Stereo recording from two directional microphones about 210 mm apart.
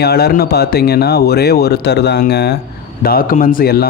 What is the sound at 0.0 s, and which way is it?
Speech, 50° left (ahead or behind).